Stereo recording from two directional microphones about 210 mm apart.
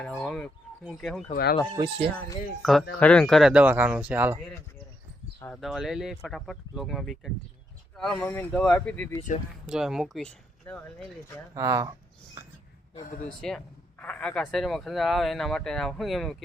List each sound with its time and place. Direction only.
0.0 s speech: 5° left (ahead or behind)
1.7 s speech: 20° right (ahead or behind)
2.6 s speech: centre (ahead or behind)
5.5 s speech: centre (ahead or behind)
11.5 s speech: 15° right (ahead or behind)
13.2 s speech: 5° left (ahead or behind)